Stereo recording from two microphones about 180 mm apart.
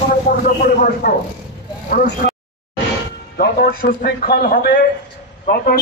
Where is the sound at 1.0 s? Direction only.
60° left (ahead or behind).